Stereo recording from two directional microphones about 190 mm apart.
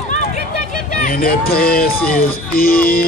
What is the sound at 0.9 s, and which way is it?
Speech, 50° left (ahead or behind).